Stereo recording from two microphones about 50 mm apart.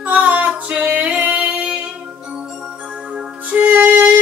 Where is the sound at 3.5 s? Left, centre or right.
Right.